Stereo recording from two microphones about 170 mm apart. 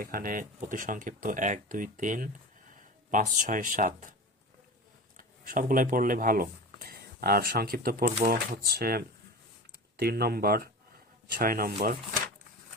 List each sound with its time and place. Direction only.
0.0 s speech: 60° right (ahead or behind)
5.1 s speech: 55° right (ahead or behind)